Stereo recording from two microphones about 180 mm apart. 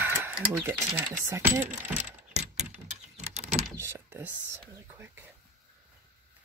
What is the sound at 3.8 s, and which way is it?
Speech, 10° right (ahead or behind).